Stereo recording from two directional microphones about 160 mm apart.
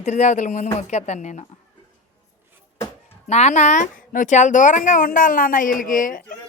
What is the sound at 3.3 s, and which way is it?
Speech, 45° left (ahead or behind).